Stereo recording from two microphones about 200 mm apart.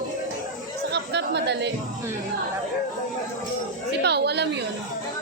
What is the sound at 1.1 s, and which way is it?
Speech, 60° right (ahead or behind).